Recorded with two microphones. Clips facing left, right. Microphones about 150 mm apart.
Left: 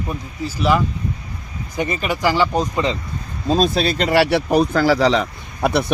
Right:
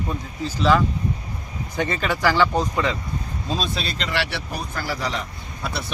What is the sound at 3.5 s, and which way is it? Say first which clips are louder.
Speech: left 10 dB; 45° left (ahead or behind).